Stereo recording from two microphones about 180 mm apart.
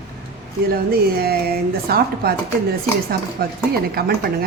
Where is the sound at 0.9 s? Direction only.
60° right (ahead or behind).